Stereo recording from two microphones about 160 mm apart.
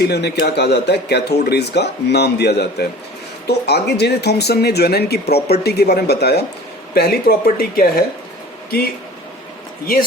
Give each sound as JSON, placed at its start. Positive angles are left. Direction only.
{"t": 0.0, "sound": "speech", "side_deg": 90}
{"t": 6.9, "sound": "speech", "side_deg": 75}
{"t": 9.8, "sound": "speech", "side_deg": 65}